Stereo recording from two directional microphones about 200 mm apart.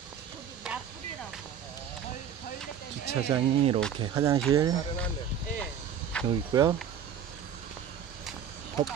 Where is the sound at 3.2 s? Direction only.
30° right (ahead or behind).